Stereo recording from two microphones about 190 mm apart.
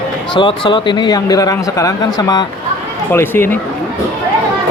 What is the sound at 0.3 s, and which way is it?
Speech, 25° left (ahead or behind).